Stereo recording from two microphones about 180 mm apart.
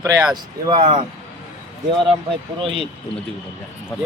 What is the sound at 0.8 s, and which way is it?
Speech, 30° right (ahead or behind).